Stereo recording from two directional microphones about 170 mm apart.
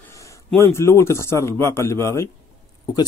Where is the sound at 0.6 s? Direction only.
15° left (ahead or behind).